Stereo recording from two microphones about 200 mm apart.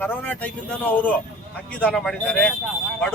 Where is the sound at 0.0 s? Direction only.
10° left (ahead or behind).